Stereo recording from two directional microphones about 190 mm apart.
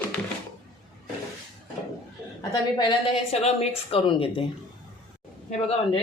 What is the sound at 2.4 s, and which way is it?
A woman's voice, 25° left (ahead or behind).